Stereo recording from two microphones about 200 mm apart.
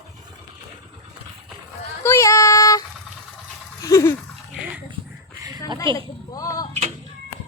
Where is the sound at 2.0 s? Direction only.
15° left (ahead or behind).